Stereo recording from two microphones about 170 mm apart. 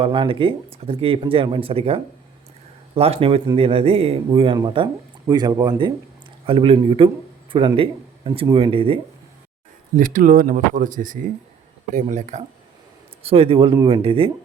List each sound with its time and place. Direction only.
0.0 s speech: 30° right (ahead or behind)
9.9 s speech: 50° right (ahead or behind); by 14.3 s 30° right (ahead or behind)